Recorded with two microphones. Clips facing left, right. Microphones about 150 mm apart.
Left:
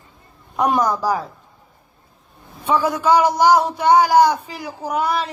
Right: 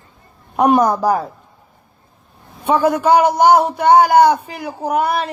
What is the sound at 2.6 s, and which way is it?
A man's voice, 55° right (ahead or behind).